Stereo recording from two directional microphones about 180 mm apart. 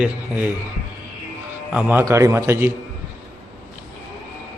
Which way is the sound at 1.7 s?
10° right (ahead or behind).